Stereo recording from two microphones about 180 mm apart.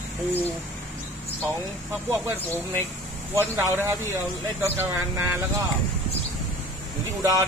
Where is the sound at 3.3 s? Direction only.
15° right (ahead or behind).